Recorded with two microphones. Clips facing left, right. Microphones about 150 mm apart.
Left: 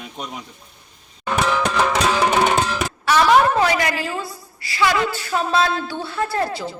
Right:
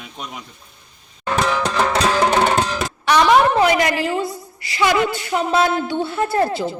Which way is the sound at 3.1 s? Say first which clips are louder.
Right 1 dB; 20° right (ahead or behind).